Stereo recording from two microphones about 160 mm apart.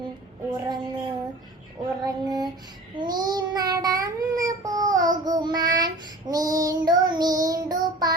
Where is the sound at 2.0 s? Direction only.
25° right (ahead or behind).